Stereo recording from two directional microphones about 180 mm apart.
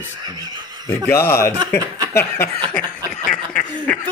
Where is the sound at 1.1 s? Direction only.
15° left (ahead or behind).